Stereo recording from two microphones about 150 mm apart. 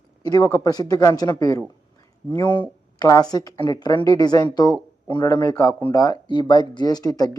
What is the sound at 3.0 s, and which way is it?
Speech, 25° left (ahead or behind).